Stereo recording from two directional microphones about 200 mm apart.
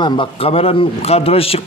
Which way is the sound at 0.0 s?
25° left (ahead or behind).